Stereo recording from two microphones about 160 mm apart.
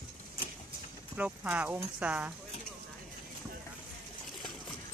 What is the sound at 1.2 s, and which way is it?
Speech, 10° right (ahead or behind).